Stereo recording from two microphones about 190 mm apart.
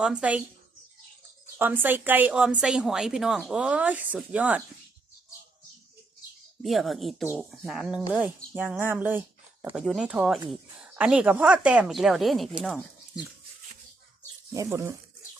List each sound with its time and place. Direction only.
0.0 s speech: 5° right (ahead or behind)
1.5 s a woman's voice: 10° right (ahead or behind)
6.6 s speech: centre (ahead or behind)
14.5 s a woman's voice: 15° right (ahead or behind)